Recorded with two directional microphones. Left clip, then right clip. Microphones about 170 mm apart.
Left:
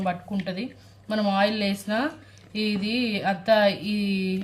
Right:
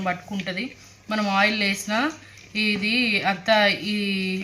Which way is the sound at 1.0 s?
30° left (ahead or behind).